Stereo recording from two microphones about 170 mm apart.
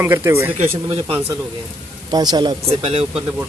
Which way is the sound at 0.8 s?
35° right (ahead or behind).